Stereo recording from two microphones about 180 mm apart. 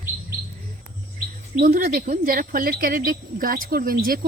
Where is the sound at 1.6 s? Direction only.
55° right (ahead or behind).